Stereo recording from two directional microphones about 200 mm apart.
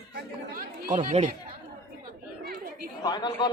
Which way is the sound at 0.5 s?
40° right (ahead or behind).